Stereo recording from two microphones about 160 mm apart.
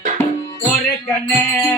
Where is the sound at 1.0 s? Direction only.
15° left (ahead or behind).